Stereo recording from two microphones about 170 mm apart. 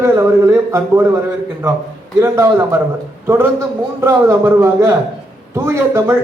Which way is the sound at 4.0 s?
15° right (ahead or behind).